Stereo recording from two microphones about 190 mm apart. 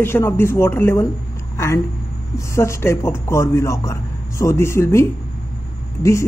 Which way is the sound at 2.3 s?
15° left (ahead or behind).